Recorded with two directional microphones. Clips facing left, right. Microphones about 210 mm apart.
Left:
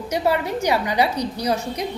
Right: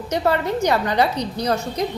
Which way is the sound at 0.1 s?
10° left (ahead or behind).